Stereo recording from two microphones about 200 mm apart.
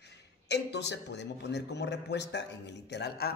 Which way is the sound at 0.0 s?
60° left (ahead or behind).